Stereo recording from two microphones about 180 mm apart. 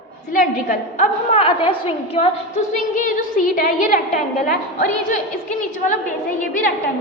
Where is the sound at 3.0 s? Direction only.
45° left (ahead or behind).